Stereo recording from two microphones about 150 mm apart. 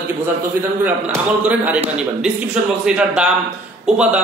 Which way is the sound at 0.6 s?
10° right (ahead or behind).